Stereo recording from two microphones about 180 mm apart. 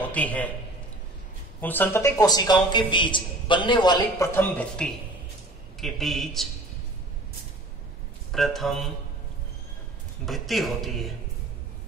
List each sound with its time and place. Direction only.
0.0 s a man's voice: 10° left (ahead or behind)
1.6 s a man's voice: 10° left (ahead or behind)
4.3 s speech: 10° left (ahead or behind)
8.3 s speech: centre (ahead or behind)
10.2 s speech: centre (ahead or behind)